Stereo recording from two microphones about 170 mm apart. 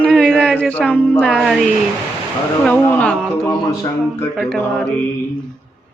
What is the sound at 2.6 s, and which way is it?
Speech, 10° left (ahead or behind).